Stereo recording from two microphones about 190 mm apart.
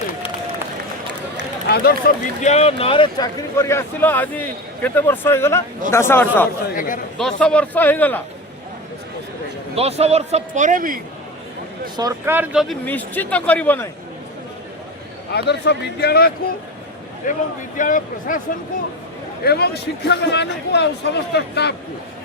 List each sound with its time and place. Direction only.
1.6 s speech: 55° left (ahead or behind)
2.4 s speech: 35° left (ahead or behind)
3.6 s a man's voice: 15° left (ahead or behind)
6.7 s speech: 45° left (ahead or behind)
7.2 s a man's voice: 5° left (ahead or behind)
9.7 s a man's voice: 35° right (ahead or behind)
11.9 s speech: 15° right (ahead or behind)
12.6 s a man's voice: 10° left (ahead or behind)
15.3 s a man's voice: 60° left (ahead or behind)
17.2 s speech: 45° left (ahead or behind)
19.5 s a man's voice: 55° left (ahead or behind)